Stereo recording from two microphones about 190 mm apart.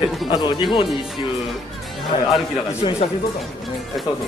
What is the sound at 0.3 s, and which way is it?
Speech, 25° left (ahead or behind).